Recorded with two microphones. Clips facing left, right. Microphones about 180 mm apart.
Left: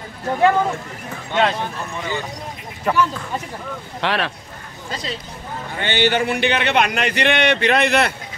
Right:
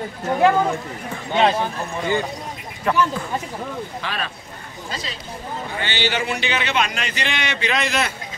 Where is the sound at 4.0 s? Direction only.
70° left (ahead or behind).